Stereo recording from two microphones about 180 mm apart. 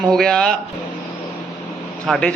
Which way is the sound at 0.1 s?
5° left (ahead or behind).